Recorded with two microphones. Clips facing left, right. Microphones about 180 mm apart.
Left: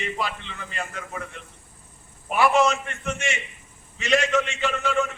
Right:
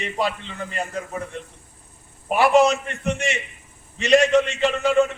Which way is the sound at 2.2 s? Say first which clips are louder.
Right 4 dB; 35° right (ahead or behind).